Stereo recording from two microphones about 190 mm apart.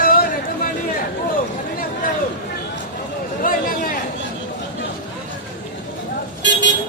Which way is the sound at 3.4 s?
50° left (ahead or behind).